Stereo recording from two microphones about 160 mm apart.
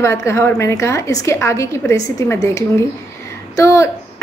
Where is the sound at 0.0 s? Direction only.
15° left (ahead or behind).